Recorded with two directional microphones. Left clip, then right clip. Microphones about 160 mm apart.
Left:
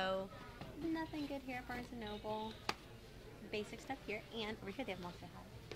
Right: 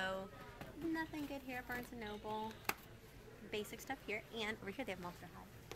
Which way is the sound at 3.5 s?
Centre (ahead or behind).